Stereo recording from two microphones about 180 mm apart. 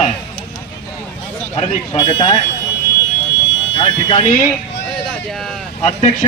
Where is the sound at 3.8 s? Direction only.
30° left (ahead or behind).